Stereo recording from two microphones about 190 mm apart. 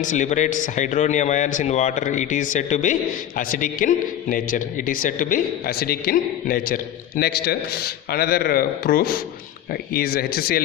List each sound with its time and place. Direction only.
0.0 s a man's voice: 40° left (ahead or behind)